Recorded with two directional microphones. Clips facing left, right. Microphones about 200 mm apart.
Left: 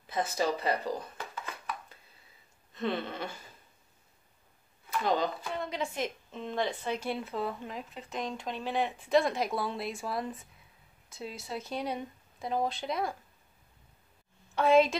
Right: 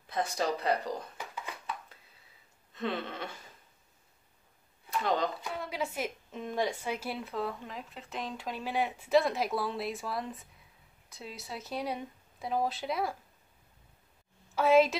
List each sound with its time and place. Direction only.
0.0 s a woman's voice: 5° left (ahead or behind)
1.1 s a sound: 15° right (ahead or behind)
2.7 s a woman's voice: centre (ahead or behind)
5.0 s a woman's voice: centre (ahead or behind)
14.5 s a woman's voice: 5° right (ahead or behind)